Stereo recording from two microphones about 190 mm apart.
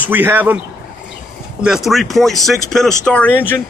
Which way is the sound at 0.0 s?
10° right (ahead or behind).